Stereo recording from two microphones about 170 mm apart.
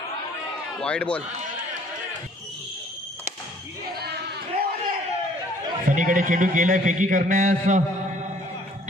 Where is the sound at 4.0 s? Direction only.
75° right (ahead or behind).